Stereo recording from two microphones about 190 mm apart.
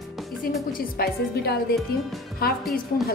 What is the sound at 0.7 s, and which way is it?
A woman's voice, 55° left (ahead or behind).